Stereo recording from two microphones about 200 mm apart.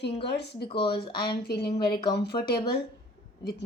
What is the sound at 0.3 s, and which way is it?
Speech, 55° left (ahead or behind).